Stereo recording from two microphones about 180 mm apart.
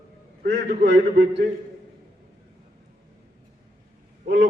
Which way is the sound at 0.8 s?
75° right (ahead or behind).